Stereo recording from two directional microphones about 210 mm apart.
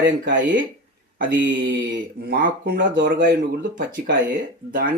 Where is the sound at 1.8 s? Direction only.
60° right (ahead or behind).